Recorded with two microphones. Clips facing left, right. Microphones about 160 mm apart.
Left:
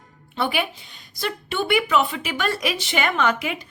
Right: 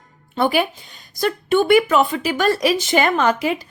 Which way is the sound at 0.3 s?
40° right (ahead or behind).